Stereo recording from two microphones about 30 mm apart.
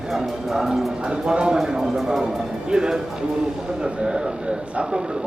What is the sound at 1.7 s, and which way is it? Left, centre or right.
Speech, centre.